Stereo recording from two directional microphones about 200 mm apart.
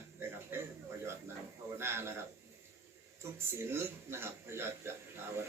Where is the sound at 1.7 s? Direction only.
10° right (ahead or behind).